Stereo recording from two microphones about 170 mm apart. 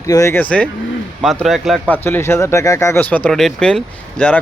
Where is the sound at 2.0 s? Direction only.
15° left (ahead or behind).